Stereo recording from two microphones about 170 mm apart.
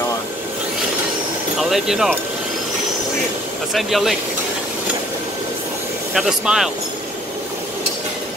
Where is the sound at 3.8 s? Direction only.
Centre (ahead or behind).